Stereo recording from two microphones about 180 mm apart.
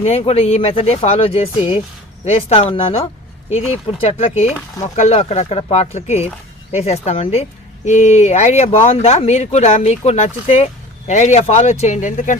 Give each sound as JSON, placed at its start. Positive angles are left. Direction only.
{"t": 0.0, "sound": "speech", "side_deg": 35}